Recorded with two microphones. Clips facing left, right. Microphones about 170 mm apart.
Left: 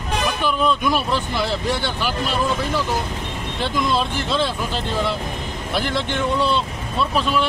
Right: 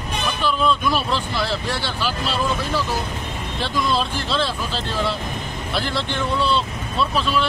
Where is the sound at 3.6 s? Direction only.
15° left (ahead or behind).